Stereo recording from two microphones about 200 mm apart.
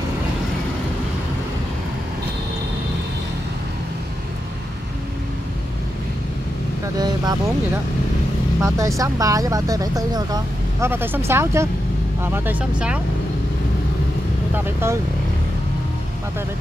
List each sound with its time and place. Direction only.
7.0 s speech: 20° right (ahead or behind)
14.5 s speech: 10° right (ahead or behind)